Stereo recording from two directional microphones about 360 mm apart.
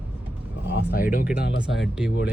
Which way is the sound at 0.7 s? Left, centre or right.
Left.